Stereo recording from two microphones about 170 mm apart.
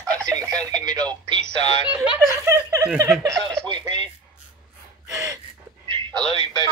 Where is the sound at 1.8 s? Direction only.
10° right (ahead or behind).